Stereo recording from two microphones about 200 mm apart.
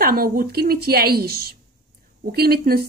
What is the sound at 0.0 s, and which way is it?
A woman's voice, 50° right (ahead or behind).